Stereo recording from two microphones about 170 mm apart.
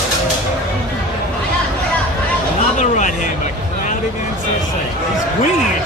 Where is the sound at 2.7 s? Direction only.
45° left (ahead or behind).